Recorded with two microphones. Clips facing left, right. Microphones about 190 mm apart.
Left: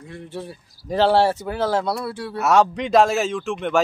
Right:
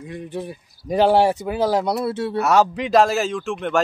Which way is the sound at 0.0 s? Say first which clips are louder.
Right 4 dB; 15° right (ahead or behind).